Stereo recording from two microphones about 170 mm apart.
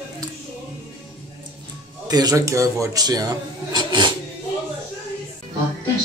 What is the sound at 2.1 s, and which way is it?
A man's voice, 20° right (ahead or behind).